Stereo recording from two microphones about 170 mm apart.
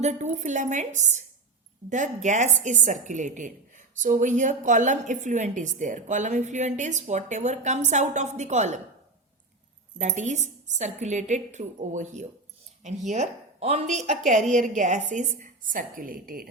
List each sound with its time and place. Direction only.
0.0 s a woman's voice: 45° right (ahead or behind)
10.0 s a woman's voice: 45° right (ahead or behind)